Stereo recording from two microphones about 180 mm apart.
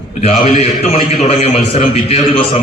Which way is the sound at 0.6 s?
35° left (ahead or behind).